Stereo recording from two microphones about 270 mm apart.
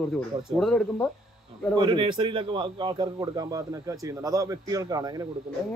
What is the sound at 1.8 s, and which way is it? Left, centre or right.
A man's voice, centre.